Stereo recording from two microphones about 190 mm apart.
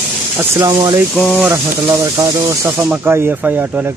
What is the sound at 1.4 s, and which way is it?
Speech, 15° right (ahead or behind).